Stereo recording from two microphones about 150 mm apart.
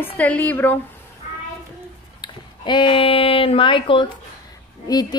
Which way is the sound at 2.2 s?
30° left (ahead or behind).